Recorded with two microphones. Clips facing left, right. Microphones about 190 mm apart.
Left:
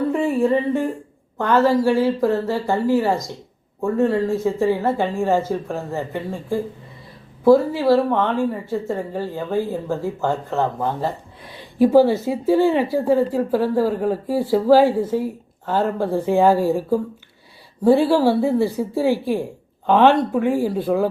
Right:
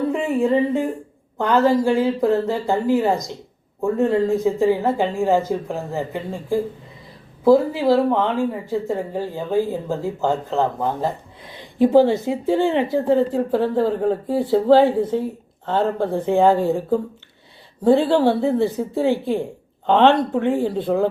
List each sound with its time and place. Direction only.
0.1 s a sound: 15° right (ahead or behind)
1.4 s speech: 15° right (ahead or behind)
7.4 s a woman's voice: 15° right (ahead or behind)